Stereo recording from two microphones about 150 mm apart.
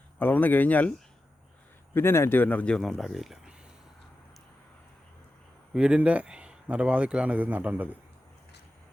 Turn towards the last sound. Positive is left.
turn(degrees=-10)  # may be behind; listen again after turning